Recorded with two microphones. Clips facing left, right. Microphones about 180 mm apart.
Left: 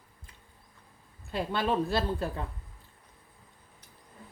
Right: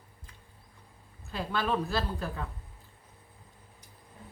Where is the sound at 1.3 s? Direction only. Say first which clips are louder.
Left 2 dB; 25° left (ahead or behind).